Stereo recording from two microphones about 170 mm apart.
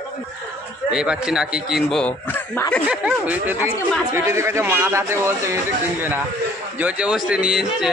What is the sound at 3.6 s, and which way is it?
Speech, 15° left (ahead or behind).